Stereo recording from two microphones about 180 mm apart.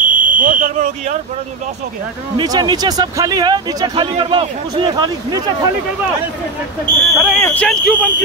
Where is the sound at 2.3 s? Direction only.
20° right (ahead or behind).